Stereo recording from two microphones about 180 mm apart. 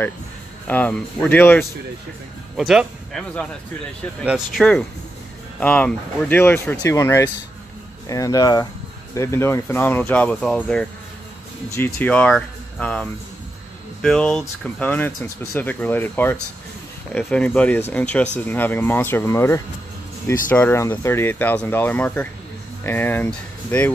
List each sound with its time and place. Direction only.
0.7 s speech: 10° left (ahead or behind)
2.5 s speech: centre (ahead or behind)